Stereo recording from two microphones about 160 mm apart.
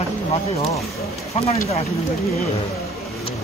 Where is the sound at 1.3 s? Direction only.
40° left (ahead or behind).